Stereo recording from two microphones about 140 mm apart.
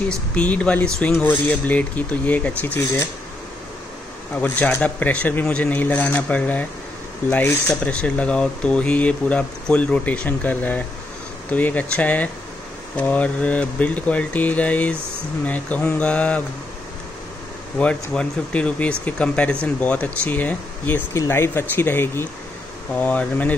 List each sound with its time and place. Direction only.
0.1 s speech: 10° left (ahead or behind)
4.4 s speech: 10° left (ahead or behind)
17.7 s speech: 10° left (ahead or behind)